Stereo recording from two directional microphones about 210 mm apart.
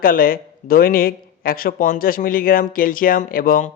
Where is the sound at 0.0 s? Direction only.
45° left (ahead or behind).